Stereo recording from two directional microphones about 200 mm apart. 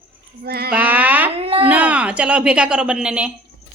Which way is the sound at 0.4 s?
50° right (ahead or behind).